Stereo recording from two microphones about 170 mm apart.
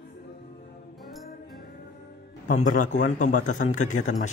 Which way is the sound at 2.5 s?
50° left (ahead or behind).